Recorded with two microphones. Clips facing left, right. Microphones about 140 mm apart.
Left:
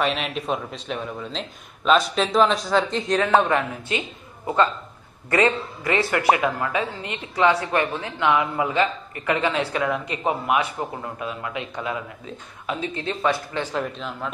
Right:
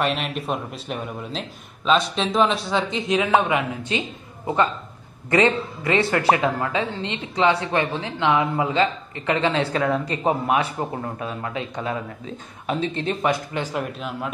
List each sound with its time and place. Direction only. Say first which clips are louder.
0.0 s a man's voice: even; centre (ahead or behind)
3.9 s speech: right 1 dB; 25° right (ahead or behind)
5.3 s speech: right 2 dB; 25° right (ahead or behind)
12.8 s speech: even; 20° right (ahead or behind)